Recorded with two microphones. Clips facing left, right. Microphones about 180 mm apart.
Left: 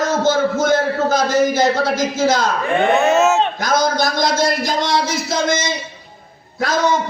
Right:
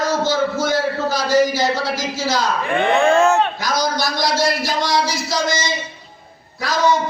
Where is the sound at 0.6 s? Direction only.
50° left (ahead or behind).